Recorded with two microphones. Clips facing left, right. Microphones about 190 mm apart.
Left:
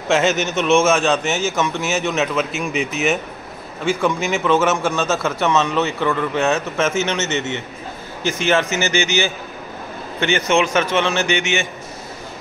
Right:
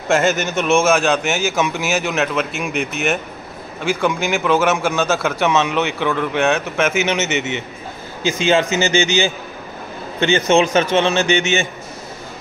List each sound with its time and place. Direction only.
0.3 s a man's voice: centre (ahead or behind)
7.2 s a man's voice: 20° right (ahead or behind)